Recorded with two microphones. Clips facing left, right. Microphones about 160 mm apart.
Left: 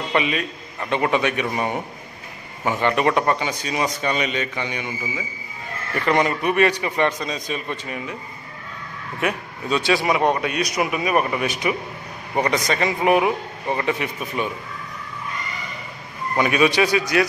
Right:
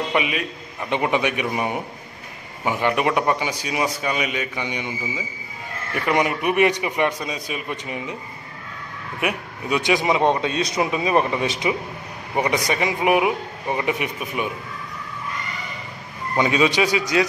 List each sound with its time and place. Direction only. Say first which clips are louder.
0.1 s a man's voice: left 1 dB; 10° right (ahead or behind)
9.2 s a man's voice: left 1 dB; 15° right (ahead or behind)
12.4 s a man's voice: even; 10° right (ahead or behind)
16.3 s a man's voice: left 1 dB; 20° right (ahead or behind)